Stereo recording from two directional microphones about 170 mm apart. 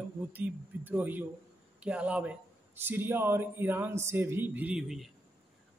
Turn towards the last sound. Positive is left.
turn(degrees=0)  # may be behind; listen again after turning